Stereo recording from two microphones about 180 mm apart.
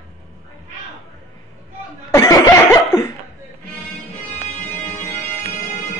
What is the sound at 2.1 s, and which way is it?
Laughter, 15° left (ahead or behind).